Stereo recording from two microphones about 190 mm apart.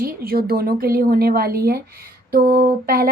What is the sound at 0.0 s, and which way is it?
Speech, 50° right (ahead or behind).